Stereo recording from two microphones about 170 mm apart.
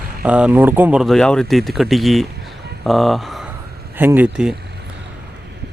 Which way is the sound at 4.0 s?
10° right (ahead or behind).